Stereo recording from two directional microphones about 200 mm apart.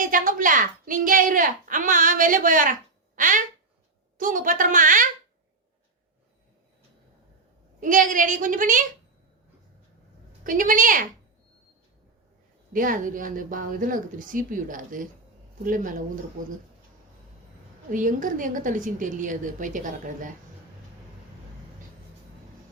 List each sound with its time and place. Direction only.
0.0 s a woman's voice: 40° right (ahead or behind)
3.2 s a sound: 40° right (ahead or behind)
4.2 s a woman's voice: 40° right (ahead or behind)
7.8 s a woman's voice: 40° right (ahead or behind)
10.4 s a woman's voice: 40° right (ahead or behind)
12.7 s a woman's voice: 45° right (ahead or behind)
17.9 s a woman's voice: 40° right (ahead or behind)